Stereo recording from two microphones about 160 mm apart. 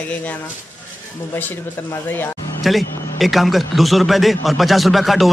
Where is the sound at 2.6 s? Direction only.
Centre (ahead or behind).